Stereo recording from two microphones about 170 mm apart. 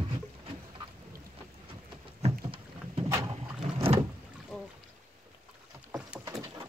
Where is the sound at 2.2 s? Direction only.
35° right (ahead or behind).